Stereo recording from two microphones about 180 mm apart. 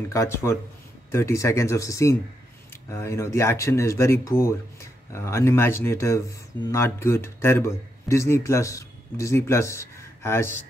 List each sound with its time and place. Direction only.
0.1 s speech: 15° left (ahead or behind)